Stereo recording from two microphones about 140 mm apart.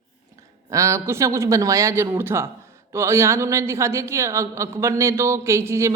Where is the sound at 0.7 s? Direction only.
20° right (ahead or behind).